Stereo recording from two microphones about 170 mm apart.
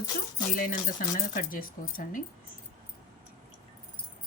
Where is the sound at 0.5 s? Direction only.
55° left (ahead or behind).